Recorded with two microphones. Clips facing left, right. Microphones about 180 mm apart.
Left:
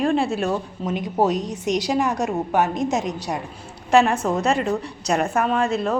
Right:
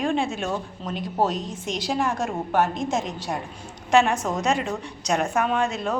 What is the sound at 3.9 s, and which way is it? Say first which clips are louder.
A woman's voice: left 3 dB; centre (ahead or behind).